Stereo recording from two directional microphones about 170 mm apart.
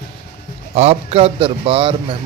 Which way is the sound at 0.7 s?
35° right (ahead or behind).